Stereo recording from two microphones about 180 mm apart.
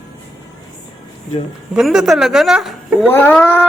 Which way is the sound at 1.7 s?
5° right (ahead or behind).